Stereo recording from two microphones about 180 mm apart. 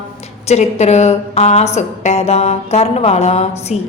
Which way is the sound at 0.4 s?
35° left (ahead or behind).